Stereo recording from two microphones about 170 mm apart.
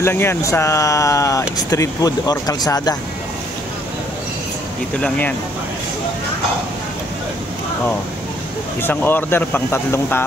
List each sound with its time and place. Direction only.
0.0 s speech: 15° left (ahead or behind)
8.8 s speech: 10° left (ahead or behind)